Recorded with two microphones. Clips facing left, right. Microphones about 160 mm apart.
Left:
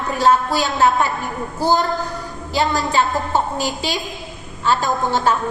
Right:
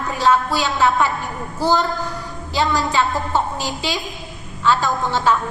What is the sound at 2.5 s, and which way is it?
A woman's voice, 45° left (ahead or behind).